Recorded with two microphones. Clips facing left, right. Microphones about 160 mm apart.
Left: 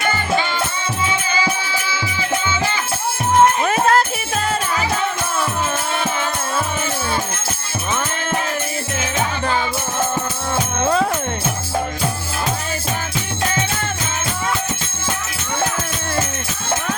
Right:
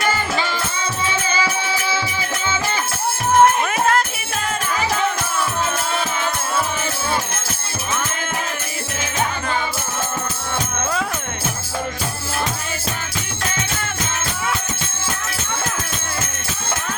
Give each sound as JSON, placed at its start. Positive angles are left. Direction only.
{"t": 3.6, "sound": "music", "side_deg": 35}
{"t": 10.8, "sound": "music", "side_deg": 40}